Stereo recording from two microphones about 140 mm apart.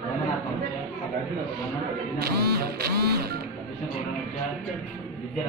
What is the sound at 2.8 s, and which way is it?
Speech, 90° right.